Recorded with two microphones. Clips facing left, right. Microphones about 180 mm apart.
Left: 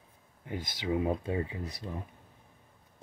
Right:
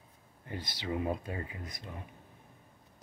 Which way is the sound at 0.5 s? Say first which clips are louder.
Left 4 dB; 15° left (ahead or behind).